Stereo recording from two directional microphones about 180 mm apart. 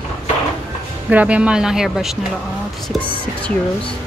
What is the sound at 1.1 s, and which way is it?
Speech, 5° right (ahead or behind).